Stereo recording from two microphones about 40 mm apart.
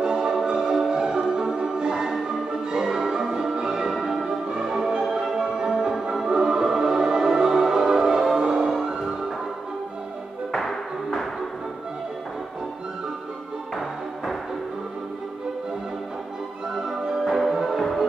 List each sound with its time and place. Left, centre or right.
0.0 s music: right
10.5 s music: centre
17.3 s music: centre